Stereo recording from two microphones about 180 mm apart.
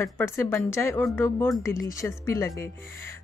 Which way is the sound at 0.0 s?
15° left (ahead or behind).